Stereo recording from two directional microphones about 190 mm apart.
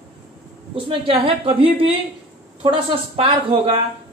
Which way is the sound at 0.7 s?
25° right (ahead or behind).